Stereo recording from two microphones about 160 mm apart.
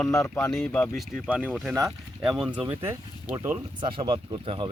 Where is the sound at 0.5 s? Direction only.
5° left (ahead or behind).